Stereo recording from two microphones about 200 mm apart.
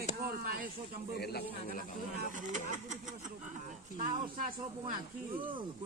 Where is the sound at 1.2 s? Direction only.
50° left (ahead or behind).